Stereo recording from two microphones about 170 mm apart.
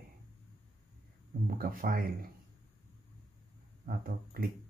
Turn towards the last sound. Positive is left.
turn(degrees=-55)  # may be behind; listen again after turning